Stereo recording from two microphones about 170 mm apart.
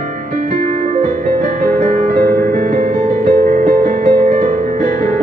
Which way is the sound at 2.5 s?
50° right (ahead or behind).